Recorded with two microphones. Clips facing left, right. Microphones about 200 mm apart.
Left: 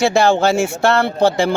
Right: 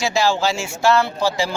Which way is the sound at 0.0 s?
55° left (ahead or behind).